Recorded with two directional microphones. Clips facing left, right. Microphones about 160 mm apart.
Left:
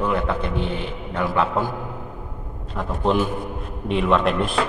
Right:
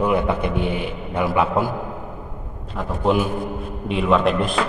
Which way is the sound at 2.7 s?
Centre (ahead or behind).